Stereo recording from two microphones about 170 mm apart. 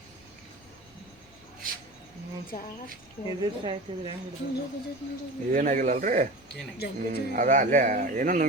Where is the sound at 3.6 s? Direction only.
30° right (ahead or behind).